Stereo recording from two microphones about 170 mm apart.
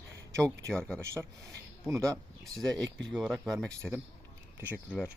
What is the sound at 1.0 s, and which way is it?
Speech, 15° right (ahead or behind).